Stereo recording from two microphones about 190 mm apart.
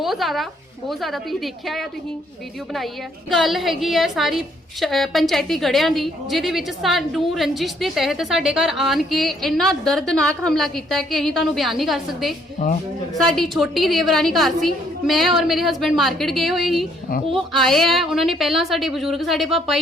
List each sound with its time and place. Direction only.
0.0 s a woman's voice: centre (ahead or behind)
3.2 s a woman's voice: centre (ahead or behind)